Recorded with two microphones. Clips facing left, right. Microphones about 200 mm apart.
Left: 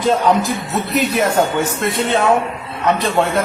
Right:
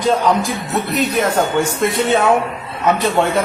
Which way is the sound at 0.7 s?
5° left (ahead or behind).